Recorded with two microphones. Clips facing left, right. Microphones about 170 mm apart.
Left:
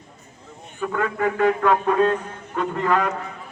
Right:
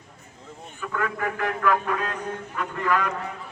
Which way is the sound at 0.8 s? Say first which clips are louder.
Left 5 dB; 25° left (ahead or behind).